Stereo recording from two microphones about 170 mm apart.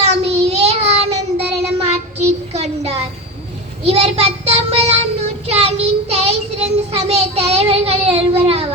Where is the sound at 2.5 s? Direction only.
40° right (ahead or behind).